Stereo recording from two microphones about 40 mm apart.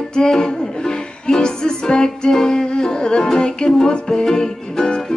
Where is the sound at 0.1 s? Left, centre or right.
Centre.